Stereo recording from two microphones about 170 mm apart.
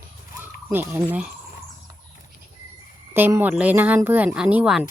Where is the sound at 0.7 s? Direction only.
10° right (ahead or behind).